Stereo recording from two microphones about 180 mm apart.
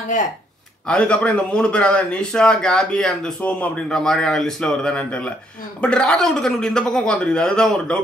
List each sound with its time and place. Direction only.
0.8 s a man's voice: 5° left (ahead or behind)